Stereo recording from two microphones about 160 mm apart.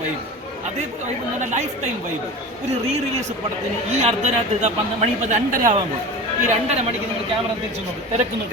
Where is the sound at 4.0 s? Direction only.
45° right (ahead or behind).